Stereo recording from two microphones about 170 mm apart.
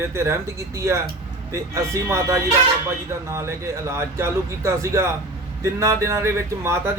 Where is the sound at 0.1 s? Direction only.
15° right (ahead or behind).